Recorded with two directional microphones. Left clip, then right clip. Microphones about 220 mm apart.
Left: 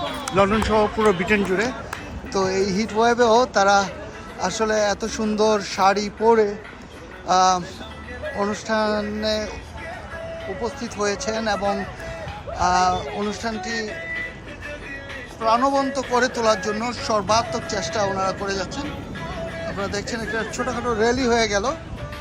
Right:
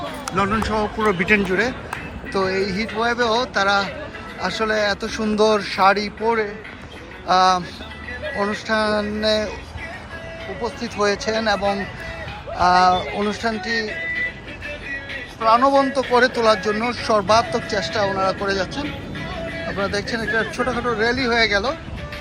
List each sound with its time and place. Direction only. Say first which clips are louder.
0.3 s speech: left 3 dB; 10° left (ahead or behind); by 6.5 s 25° left (ahead or behind)
7.3 s speech: right 2 dB; 15° left (ahead or behind)
10.6 s speech: right 4 dB; 15° left (ahead or behind)
15.4 s speech: right 4 dB; 10° left (ahead or behind)